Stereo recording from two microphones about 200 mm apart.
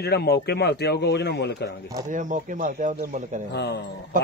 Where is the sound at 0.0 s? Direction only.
55° left (ahead or behind).